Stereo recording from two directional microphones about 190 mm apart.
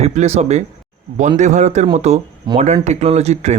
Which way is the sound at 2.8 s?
35° right (ahead or behind).